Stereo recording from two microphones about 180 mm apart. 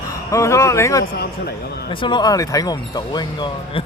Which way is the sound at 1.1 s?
60° left (ahead or behind).